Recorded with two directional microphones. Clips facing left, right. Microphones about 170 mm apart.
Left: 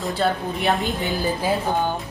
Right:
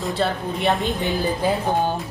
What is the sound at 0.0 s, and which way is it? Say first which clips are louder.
A woman's voice: left 1 dB; centre (ahead or behind).